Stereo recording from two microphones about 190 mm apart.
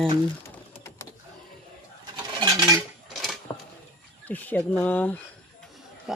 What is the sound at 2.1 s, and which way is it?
Dishes, 20° right (ahead or behind).